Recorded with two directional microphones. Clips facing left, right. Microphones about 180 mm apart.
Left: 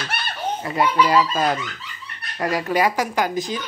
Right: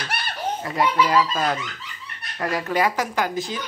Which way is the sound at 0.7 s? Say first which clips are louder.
Left 2 dB; 5° left (ahead or behind).